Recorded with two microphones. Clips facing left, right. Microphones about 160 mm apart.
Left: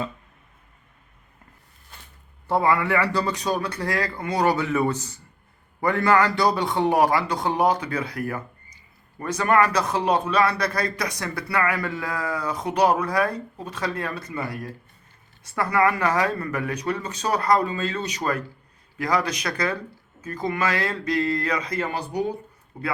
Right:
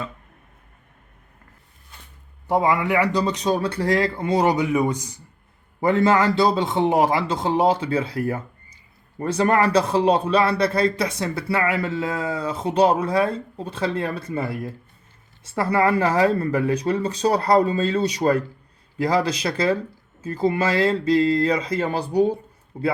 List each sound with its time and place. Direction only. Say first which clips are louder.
2.5 s a man's voice: right 1 dB; 15° right (ahead or behind)